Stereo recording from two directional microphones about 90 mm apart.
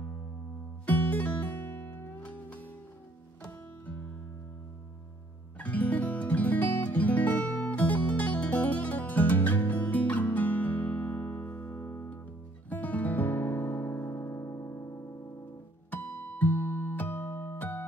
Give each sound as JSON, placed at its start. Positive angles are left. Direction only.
{"t": 0.8, "sound": "music", "side_deg": 15}
{"t": 5.6, "sound": "music", "side_deg": 15}
{"t": 12.6, "sound": "music", "side_deg": 20}